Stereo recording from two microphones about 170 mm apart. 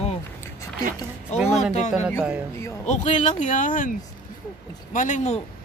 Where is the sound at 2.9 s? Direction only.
45° left (ahead or behind).